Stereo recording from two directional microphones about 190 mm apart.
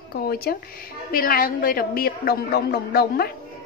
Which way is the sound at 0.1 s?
55° left (ahead or behind).